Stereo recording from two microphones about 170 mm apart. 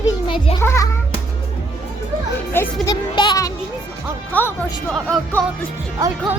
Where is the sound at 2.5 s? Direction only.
15° left (ahead or behind).